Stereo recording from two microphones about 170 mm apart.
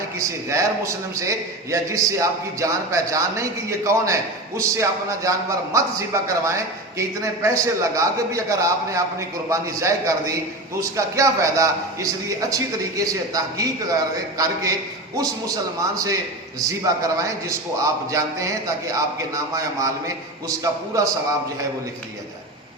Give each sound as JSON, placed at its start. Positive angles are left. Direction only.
{"t": 0.2, "sound": "a man's voice", "side_deg": -20}